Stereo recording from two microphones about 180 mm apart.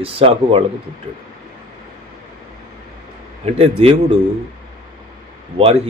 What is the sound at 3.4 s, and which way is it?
Speech, 35° right (ahead or behind).